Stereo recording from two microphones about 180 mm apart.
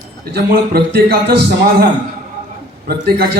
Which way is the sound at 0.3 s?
65° right (ahead or behind).